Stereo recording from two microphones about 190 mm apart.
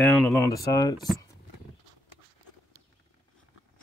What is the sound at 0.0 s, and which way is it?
Speech, 15° left (ahead or behind).